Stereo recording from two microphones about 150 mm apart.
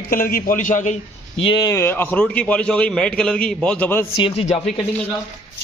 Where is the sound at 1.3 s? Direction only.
35° left (ahead or behind).